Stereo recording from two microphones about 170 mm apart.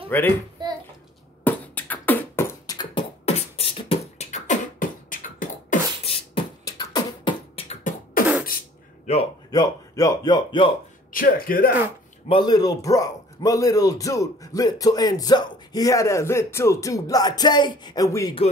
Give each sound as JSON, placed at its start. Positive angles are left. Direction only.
{"t": 0.1, "sound": "a child's voice", "side_deg": 10}
{"t": 0.6, "sound": "a sound", "side_deg": -25}
{"t": 1.4, "sound": "beatboxing", "side_deg": 10}
{"t": 2.8, "sound": "beatboxing", "side_deg": 30}
{"t": 6.0, "sound": "beatboxing", "side_deg": 35}
{"t": 6.6, "sound": "beatboxing", "side_deg": 25}
{"t": 9.0, "sound": "a sound", "side_deg": 40}
{"t": 9.5, "sound": "speech", "side_deg": 20}
{"t": 11.1, "sound": "speech", "side_deg": 55}
{"t": 12.3, "sound": "a man's voice", "side_deg": 25}